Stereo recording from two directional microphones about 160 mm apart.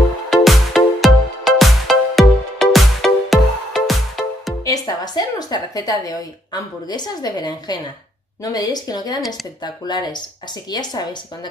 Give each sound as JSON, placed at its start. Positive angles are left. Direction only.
{"t": 0.3, "sound": "music", "side_deg": 0}
{"t": 4.6, "sound": "a woman's voice", "side_deg": 25}